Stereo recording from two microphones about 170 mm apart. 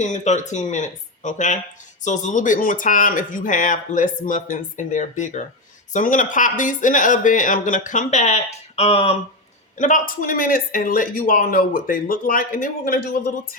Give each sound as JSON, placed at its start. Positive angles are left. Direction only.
{"t": 0.0, "sound": "speech", "side_deg": 45}
{"t": 9.7, "sound": "speech", "side_deg": 50}